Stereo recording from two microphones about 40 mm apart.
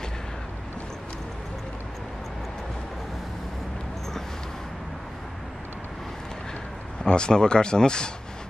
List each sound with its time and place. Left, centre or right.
7.0 s speech: left